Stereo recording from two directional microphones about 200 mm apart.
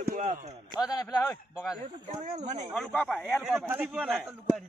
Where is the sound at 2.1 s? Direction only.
35° right (ahead or behind).